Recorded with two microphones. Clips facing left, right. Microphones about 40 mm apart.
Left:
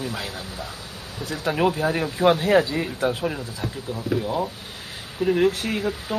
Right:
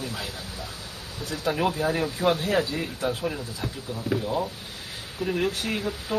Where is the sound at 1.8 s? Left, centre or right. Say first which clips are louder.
Left 2 dB; centre.